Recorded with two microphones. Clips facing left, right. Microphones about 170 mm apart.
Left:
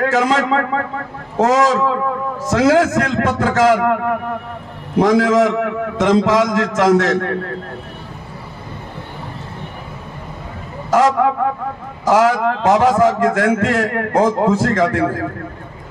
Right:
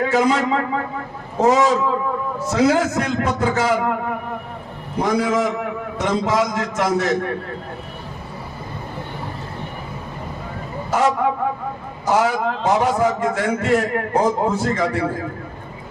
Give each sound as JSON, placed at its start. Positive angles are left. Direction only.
{"t": 0.0, "sound": "a man's voice", "side_deg": 90}
{"t": 10.9, "sound": "a man's voice", "side_deg": 90}